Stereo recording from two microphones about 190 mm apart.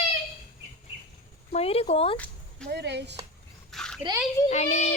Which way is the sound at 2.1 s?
5° left (ahead or behind).